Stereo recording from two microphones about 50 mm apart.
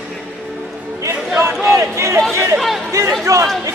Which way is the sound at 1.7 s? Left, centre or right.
Right.